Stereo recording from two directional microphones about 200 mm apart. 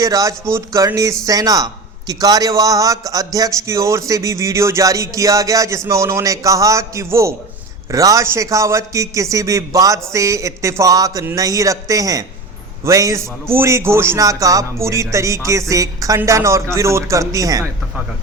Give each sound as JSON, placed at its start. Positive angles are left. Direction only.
{"t": 0.0, "sound": "a man's voice", "side_deg": -15}